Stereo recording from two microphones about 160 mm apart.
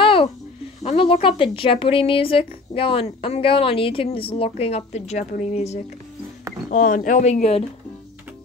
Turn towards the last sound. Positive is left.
turn(degrees=40)  # may be behind; listen again after turning